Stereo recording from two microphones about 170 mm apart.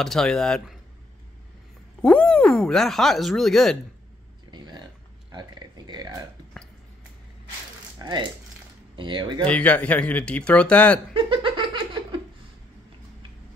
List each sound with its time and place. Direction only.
0.0 s speech: centre (ahead or behind)
2.0 s speech: 5° left (ahead or behind)
4.5 s a sound: 25° right (ahead or behind)
6.5 s a sound: centre (ahead or behind)
8.0 s speech: 25° right (ahead or behind)
9.5 s speech: 10° left (ahead or behind)
11.1 s laughter: 30° right (ahead or behind)